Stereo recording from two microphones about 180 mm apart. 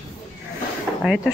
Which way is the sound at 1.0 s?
5° right (ahead or behind).